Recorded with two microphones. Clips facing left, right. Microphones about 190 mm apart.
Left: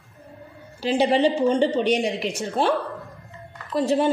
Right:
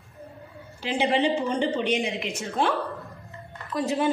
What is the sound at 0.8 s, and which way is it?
A woman's voice, 35° left (ahead or behind).